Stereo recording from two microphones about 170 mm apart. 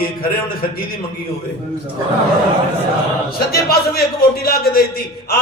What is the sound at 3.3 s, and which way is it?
A man's voice, 65° left (ahead or behind).